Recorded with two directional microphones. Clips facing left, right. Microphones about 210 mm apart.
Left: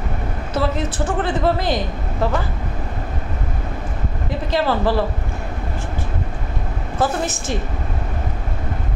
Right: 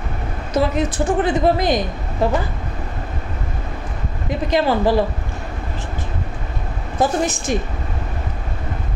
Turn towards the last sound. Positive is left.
turn(degrees=-15)  # may be behind; listen again after turning